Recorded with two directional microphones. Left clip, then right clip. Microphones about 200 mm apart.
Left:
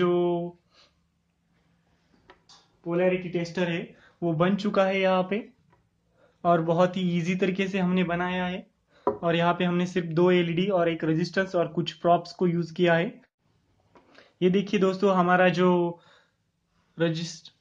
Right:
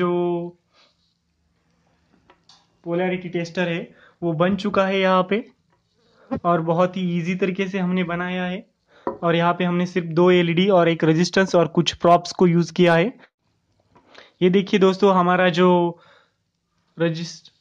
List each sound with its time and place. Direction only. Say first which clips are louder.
0.0 s a sound: right 2 dB; 25° right (ahead or behind)
2.8 s a man's voice: right 1 dB; 45° right (ahead or behind)
6.4 s a man's voice: right 3 dB; 20° right (ahead or behind)